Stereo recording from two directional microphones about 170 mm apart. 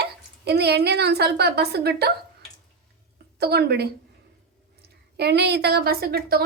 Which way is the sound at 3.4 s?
70° right (ahead or behind).